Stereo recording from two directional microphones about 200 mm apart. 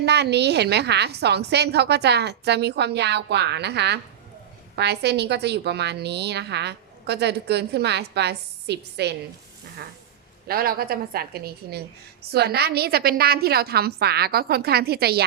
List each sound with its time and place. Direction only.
0.0 s a woman's voice: 55° right (ahead or behind)
10.4 s a woman's voice: 50° right (ahead or behind)